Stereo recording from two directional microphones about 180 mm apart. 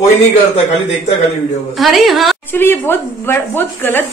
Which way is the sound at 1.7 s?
Centre (ahead or behind).